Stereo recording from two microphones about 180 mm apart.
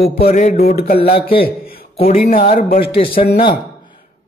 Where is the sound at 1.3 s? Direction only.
55° left (ahead or behind).